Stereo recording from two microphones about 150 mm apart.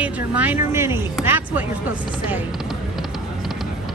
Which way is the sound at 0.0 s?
10° right (ahead or behind).